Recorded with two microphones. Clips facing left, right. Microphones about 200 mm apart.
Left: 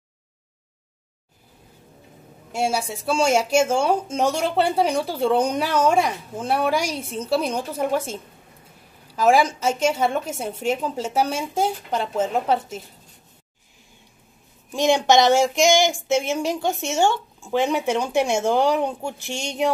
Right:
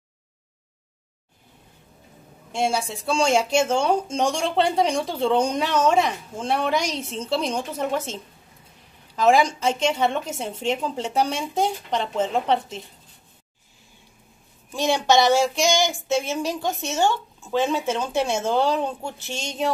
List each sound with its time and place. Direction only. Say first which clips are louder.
2.5 s speech: even; 10° left (ahead or behind)
14.7 s speech: left 3 dB; 15° left (ahead or behind)